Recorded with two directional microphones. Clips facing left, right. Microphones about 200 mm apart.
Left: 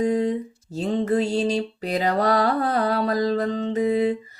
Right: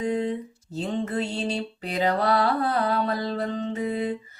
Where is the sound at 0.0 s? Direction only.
40° left (ahead or behind).